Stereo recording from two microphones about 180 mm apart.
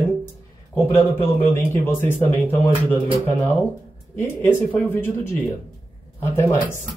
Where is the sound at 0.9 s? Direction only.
15° left (ahead or behind).